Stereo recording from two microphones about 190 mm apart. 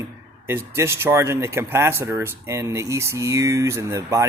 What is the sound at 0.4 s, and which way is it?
Speech, 15° right (ahead or behind).